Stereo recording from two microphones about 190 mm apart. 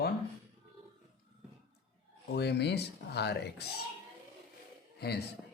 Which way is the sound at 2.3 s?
60° left (ahead or behind).